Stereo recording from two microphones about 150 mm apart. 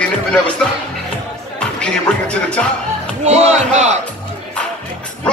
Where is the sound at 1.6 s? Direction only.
5° left (ahead or behind).